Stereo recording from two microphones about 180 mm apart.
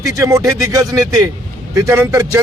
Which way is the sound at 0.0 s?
20° right (ahead or behind).